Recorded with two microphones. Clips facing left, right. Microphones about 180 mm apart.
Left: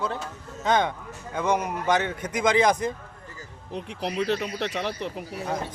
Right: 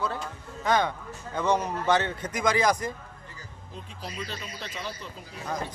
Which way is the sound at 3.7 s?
70° left (ahead or behind).